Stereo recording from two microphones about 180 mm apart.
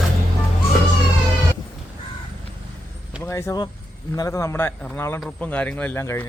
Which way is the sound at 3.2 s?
15° left (ahead or behind).